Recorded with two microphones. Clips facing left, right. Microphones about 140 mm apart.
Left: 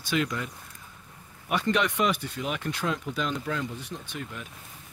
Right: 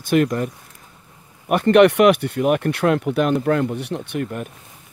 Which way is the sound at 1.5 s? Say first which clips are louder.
Right 13 dB; 55° right (ahead or behind).